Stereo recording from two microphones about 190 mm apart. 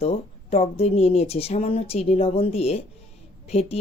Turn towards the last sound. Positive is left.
turn(degrees=30)  # may be behind; listen again after turning